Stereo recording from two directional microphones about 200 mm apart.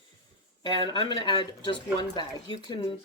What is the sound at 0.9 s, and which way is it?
Speech, 25° left (ahead or behind).